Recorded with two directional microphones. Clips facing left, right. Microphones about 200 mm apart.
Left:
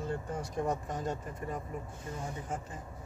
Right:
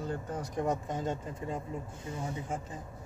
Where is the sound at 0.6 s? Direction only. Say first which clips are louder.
Right 2 dB; 20° right (ahead or behind).